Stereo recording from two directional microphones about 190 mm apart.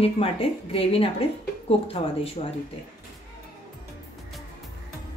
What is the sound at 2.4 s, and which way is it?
Speech, 30° left (ahead or behind).